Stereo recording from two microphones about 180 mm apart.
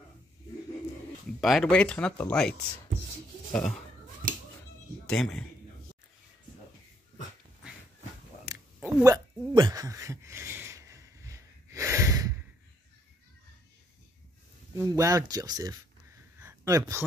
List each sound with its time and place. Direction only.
1.4 s speech: centre (ahead or behind)
3.5 s speech: 5° left (ahead or behind)
4.2 s music: 50° right (ahead or behind)
5.0 s speech: 5° left (ahead or behind)
8.7 s a sound: 15° right (ahead or behind)
14.8 s speech: 20° right (ahead or behind)
16.3 s a sound: 15° right (ahead or behind)